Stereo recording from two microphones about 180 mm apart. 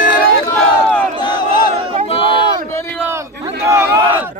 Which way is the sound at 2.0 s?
30° left (ahead or behind).